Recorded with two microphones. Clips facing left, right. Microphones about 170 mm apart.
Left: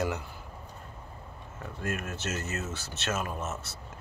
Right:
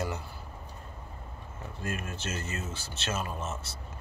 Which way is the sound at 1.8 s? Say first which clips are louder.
Left 2 dB; 65° left (ahead or behind).